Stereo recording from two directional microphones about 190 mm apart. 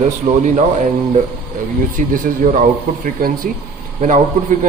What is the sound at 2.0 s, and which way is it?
Speech, 40° right (ahead or behind).